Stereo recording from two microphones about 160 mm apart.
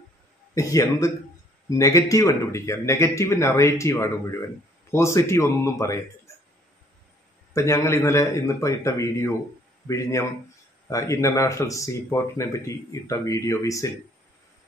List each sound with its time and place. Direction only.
0.6 s speech: 20° left (ahead or behind)
7.5 s a man's voice: 20° left (ahead or behind)